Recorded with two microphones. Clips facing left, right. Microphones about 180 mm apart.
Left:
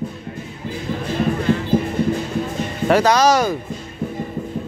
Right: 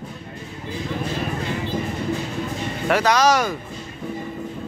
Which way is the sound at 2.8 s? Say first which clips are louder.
Left 3 dB; 35° left (ahead or behind).